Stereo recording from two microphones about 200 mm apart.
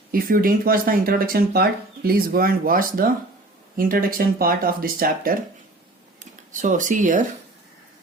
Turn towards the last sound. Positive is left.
turn(degrees=-40)  # may be behind; listen again after turning